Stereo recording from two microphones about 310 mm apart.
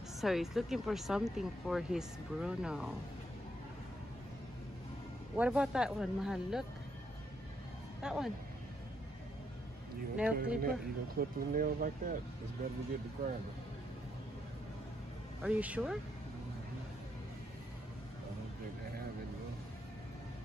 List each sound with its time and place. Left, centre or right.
0.2 s speech: centre
5.3 s speech: centre
8.0 s speech: centre
10.1 s speech: centre
11.1 s speech: right
15.4 s speech: centre